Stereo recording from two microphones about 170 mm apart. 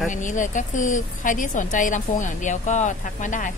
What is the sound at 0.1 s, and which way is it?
A woman's voice, 50° left (ahead or behind).